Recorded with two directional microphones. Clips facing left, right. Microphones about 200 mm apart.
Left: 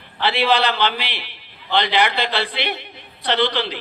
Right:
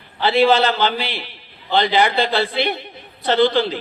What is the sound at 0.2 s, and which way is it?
A man's voice, 40° right (ahead or behind).